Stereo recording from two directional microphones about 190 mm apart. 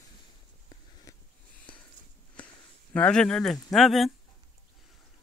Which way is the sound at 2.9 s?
5° left (ahead or behind).